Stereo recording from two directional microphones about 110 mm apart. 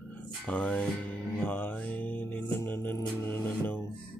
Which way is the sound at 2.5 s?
20° left (ahead or behind).